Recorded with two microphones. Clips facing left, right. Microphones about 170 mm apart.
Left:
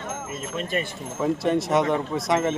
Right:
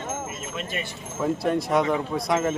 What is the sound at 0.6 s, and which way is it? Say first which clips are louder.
Speech: left 6 dB; 45° left (ahead or behind).